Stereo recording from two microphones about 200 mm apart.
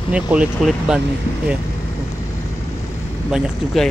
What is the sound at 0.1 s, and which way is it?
Speech, 5° right (ahead or behind).